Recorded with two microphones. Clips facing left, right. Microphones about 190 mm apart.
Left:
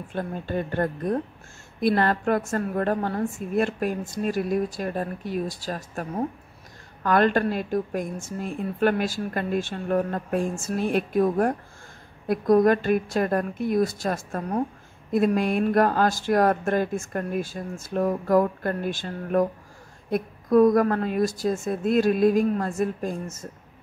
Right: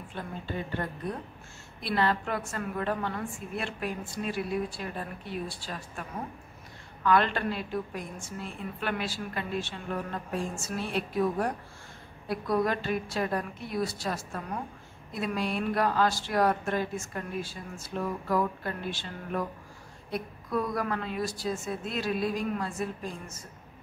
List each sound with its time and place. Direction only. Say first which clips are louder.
0.1 s speech: left 8 dB; 50° left (ahead or behind)